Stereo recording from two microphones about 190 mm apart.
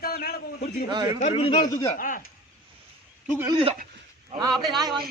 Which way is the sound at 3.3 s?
10° right (ahead or behind).